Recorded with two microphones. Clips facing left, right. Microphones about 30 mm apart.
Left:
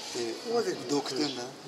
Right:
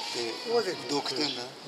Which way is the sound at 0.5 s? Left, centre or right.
Right.